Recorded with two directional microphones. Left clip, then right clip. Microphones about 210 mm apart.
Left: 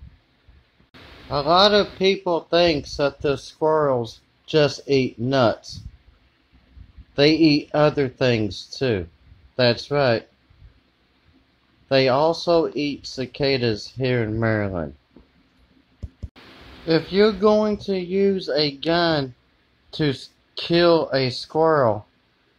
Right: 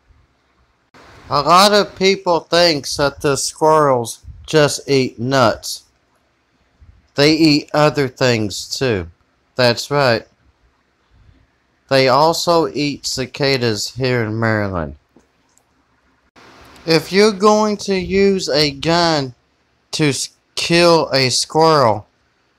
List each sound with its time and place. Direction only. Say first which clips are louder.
1.3 s speech: right 5 dB; 15° right (ahead or behind)
7.2 s speech: right 4 dB; 15° right (ahead or behind)
11.9 s speech: right 6 dB; 15° right (ahead or behind)
16.8 s speech: right 5 dB; 20° right (ahead or behind)
20.5 s speech: right 5 dB; 20° right (ahead or behind)